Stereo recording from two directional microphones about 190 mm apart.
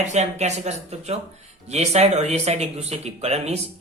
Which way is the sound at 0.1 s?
35° right (ahead or behind).